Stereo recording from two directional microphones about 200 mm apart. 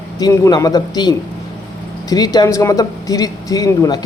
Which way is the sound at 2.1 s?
20° left (ahead or behind).